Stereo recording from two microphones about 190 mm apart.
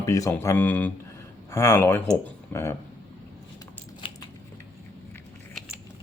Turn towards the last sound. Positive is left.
turn(degrees=25)  # may be behind; listen again after turning